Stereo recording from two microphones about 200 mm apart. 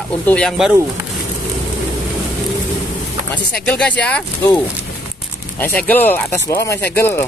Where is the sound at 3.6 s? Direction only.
5° left (ahead or behind).